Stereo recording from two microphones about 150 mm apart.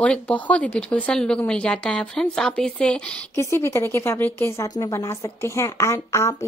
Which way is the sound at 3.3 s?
15° left (ahead or behind).